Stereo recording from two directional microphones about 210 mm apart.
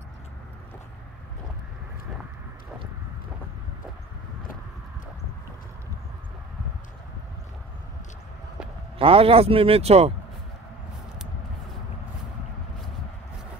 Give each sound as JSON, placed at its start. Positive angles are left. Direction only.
{"t": 8.9, "sound": "a man's voice", "side_deg": -25}